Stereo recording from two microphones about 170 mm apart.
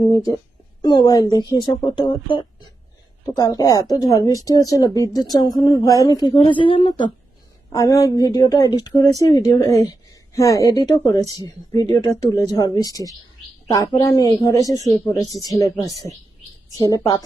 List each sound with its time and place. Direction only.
0.1 s speech: 20° left (ahead or behind)
3.3 s speech: 20° left (ahead or behind)